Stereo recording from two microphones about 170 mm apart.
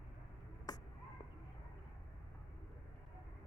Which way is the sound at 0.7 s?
25° left (ahead or behind).